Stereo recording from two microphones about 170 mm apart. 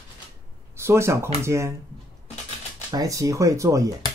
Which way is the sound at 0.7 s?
15° right (ahead or behind).